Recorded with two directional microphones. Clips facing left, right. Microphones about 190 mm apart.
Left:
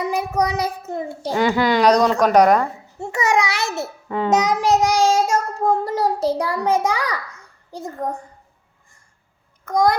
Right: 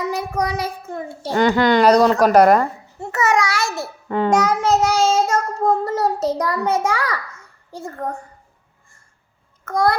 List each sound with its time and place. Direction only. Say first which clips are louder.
0.0 s child singing: left 2 dB; 15° left (ahead or behind)
1.3 s a woman's voice: right 3 dB; 5° left (ahead or behind)
3.0 s babbling: right 1 dB; 15° left (ahead or behind)
4.3 s child singing: even; 20° left (ahead or behind)
7.7 s a woman's voice: left 1 dB; 15° left (ahead or behind)
9.6 s a woman's voice: left 1 dB; 15° left (ahead or behind)